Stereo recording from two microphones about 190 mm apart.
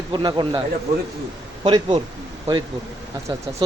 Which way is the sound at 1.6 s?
25° right (ahead or behind).